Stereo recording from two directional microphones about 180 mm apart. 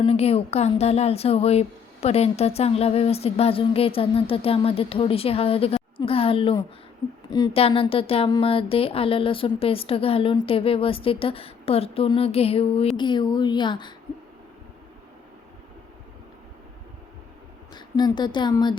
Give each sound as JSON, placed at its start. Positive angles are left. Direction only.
{"t": 0.0, "sound": "a woman's voice", "side_deg": 35}
{"t": 7.5, "sound": "a woman's voice", "side_deg": 30}
{"t": 17.7, "sound": "speech", "side_deg": 25}